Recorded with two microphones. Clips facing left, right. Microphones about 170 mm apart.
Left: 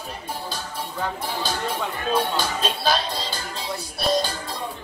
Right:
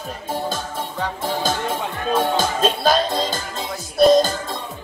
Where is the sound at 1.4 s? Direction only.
45° right (ahead or behind).